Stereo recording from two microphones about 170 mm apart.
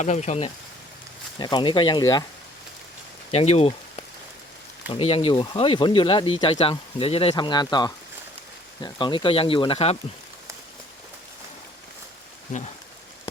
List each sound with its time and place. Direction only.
0.0 s speech: 45° left (ahead or behind)
1.4 s speech: 25° left (ahead or behind)
3.3 s speech: 35° left (ahead or behind)